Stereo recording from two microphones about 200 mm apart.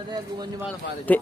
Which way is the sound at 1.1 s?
10° left (ahead or behind).